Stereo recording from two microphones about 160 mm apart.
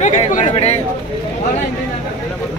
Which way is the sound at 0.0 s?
50° left (ahead or behind).